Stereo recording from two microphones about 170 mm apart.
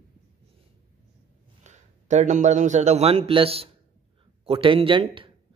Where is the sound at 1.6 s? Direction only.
45° right (ahead or behind).